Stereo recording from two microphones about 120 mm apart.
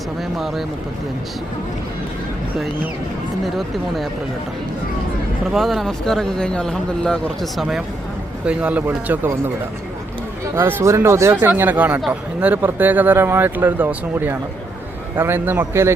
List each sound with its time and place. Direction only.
5.5 s speech: centre (ahead or behind)
10.5 s a man's voice: 20° right (ahead or behind)